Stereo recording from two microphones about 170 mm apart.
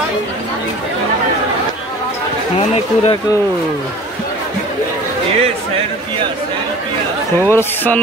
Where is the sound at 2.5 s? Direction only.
35° left (ahead or behind).